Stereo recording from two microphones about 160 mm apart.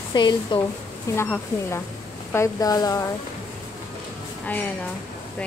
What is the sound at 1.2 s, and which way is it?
A woman's voice, 15° left (ahead or behind).